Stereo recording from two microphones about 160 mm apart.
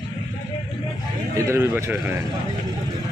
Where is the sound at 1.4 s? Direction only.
15° right (ahead or behind).